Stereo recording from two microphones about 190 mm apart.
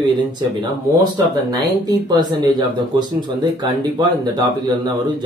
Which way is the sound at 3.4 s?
20° right (ahead or behind).